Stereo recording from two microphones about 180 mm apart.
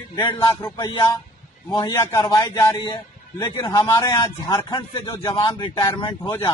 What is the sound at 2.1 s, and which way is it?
A man's voice, 15° left (ahead or behind).